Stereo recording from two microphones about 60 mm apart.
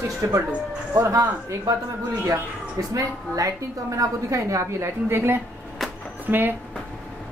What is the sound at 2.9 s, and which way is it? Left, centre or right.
A woman's voice, right.